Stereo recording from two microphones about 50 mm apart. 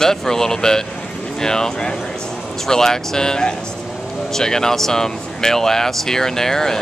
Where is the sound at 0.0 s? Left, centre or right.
Centre.